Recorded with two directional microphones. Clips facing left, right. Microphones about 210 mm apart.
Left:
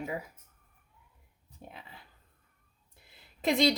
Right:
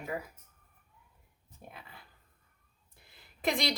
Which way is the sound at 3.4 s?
25° left (ahead or behind).